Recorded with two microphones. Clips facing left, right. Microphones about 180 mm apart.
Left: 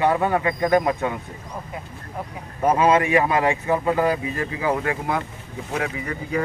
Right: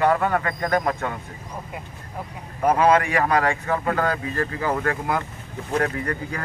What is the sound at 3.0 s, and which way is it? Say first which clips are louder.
Speech: left 2 dB; 20° left (ahead or behind).